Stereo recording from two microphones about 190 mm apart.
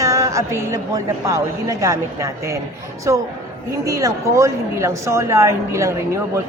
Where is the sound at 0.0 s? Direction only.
15° right (ahead or behind).